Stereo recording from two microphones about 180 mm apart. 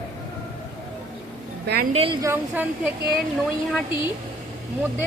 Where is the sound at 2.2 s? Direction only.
10° right (ahead or behind).